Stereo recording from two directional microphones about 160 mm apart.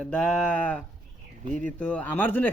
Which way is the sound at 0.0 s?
5° left (ahead or behind).